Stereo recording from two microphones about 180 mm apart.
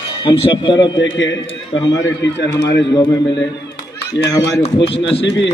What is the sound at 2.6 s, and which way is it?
Speech, 75° left (ahead or behind).